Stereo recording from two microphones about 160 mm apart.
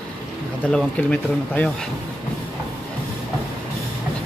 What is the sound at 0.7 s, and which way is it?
Speech, 5° left (ahead or behind).